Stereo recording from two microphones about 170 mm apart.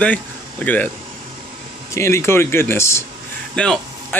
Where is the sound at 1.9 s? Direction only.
15° left (ahead or behind).